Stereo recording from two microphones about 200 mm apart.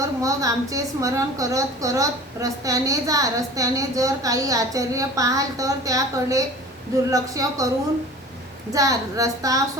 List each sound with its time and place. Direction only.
0.0 s a woman's voice: 15° right (ahead or behind)
8.7 s a woman's voice: 15° right (ahead or behind)